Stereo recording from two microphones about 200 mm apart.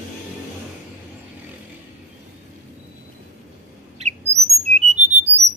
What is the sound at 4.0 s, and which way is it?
Bird, 30° right (ahead or behind).